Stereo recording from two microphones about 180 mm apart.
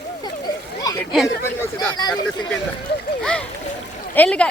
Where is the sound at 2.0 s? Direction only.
20° left (ahead or behind).